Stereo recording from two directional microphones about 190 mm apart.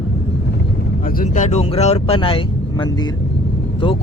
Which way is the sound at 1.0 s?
45° left (ahead or behind).